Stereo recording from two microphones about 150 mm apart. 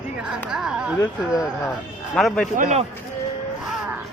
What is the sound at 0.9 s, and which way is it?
Speech, 25° left (ahead or behind).